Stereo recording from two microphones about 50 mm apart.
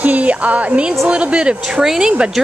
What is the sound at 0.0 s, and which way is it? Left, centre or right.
Speech, right.